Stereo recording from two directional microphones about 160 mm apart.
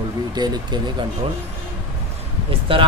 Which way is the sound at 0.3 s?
25° right (ahead or behind).